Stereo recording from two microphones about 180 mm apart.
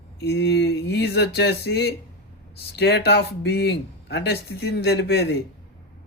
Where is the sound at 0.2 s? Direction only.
65° left (ahead or behind).